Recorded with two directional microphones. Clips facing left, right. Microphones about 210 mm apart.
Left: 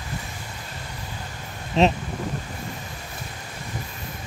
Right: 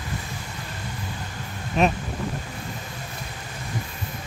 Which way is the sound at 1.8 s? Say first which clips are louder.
Left 2 dB; 25° left (ahead or behind).